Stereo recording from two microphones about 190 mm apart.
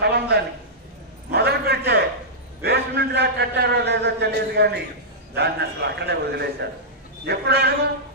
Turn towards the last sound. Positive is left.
turn(degrees=-60)  # may be behind; listen again after turning